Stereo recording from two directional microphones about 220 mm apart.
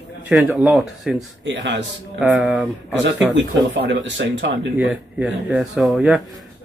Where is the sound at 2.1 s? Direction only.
5° right (ahead or behind).